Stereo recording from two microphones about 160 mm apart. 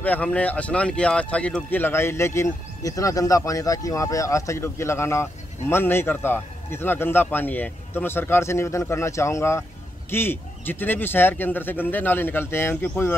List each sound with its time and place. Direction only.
0.0 s speech: 10° left (ahead or behind)